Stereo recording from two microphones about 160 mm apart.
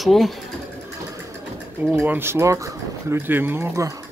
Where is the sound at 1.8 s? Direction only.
10° right (ahead or behind).